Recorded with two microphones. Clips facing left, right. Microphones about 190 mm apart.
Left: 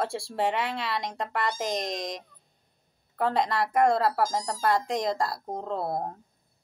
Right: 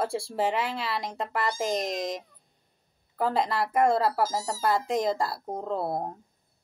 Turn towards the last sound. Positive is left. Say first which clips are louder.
# right 1 dB
turn(degrees=-5)  # may be behind; listen again after turning